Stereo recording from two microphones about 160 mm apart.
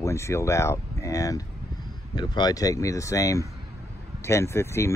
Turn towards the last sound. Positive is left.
turn(degrees=15)  # may be behind; listen again after turning